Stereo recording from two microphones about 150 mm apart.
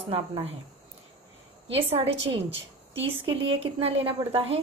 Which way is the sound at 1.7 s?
40° right (ahead or behind).